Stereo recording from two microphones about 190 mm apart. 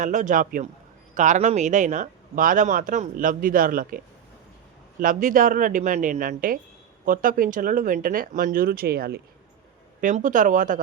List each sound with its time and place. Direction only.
0.0 s speech: 40° right (ahead or behind)
10.0 s speech: 40° right (ahead or behind)